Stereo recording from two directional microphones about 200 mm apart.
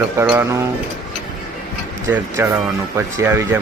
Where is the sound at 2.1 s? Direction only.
10° right (ahead or behind).